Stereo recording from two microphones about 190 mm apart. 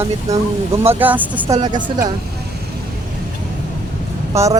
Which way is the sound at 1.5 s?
25° right (ahead or behind).